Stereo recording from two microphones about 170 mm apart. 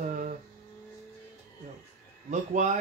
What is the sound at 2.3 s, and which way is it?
Speech, 45° right (ahead or behind).